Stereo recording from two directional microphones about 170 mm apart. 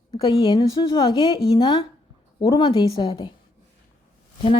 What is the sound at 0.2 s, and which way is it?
Speech, 25° left (ahead or behind).